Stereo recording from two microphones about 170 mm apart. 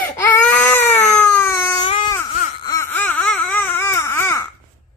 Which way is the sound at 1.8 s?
30° left (ahead or behind).